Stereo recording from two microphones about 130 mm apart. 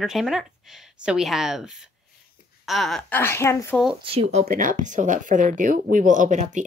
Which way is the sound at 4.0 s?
45° right (ahead or behind).